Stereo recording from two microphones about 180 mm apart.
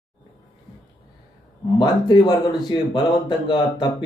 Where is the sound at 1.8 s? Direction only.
25° left (ahead or behind).